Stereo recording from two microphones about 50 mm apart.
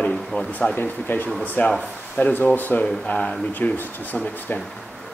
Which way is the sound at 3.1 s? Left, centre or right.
Left.